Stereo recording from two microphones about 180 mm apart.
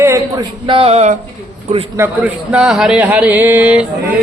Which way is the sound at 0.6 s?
30° right (ahead or behind).